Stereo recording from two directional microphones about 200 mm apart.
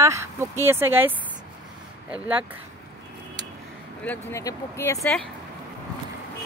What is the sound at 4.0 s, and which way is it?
Speech, 10° left (ahead or behind).